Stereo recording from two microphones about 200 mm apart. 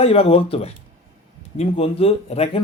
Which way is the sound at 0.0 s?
30° left (ahead or behind).